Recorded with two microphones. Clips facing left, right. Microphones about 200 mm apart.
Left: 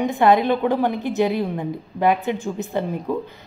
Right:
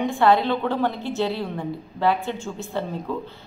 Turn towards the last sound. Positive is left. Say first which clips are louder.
# left 4 dB
turn(degrees=15)  # may be behind; listen again after turning